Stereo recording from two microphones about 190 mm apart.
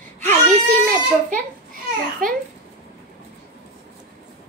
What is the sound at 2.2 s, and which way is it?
Speech, 45° right (ahead or behind).